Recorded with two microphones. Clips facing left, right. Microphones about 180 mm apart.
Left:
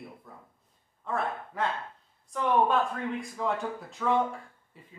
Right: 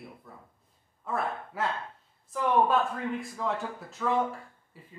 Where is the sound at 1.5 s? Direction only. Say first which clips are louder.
Left 1 dB; 5° right (ahead or behind).